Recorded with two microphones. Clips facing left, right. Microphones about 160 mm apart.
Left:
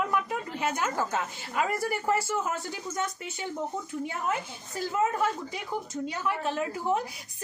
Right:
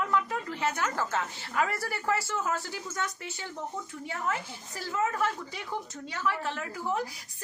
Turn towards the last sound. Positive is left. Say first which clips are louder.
# left 4 dB
turn(degrees=20)  # may be behind; listen again after turning